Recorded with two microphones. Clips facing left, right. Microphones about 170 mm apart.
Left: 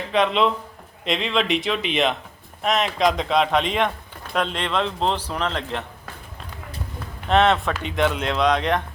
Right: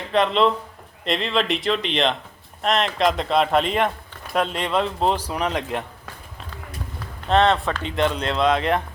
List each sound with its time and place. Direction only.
0.1 s speech: centre (ahead or behind)
7.3 s speech: centre (ahead or behind)